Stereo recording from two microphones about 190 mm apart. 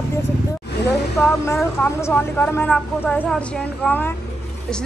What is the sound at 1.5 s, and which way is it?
A woman's voice, 15° left (ahead or behind).